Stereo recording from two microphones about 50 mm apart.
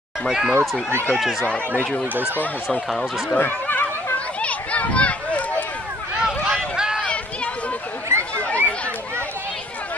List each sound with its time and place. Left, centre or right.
0.3 s speech: centre
3.3 s speech: left
4.4 s a sound: left
6.2 s a sound: centre
8.1 s chatter: right
8.5 s chatter: left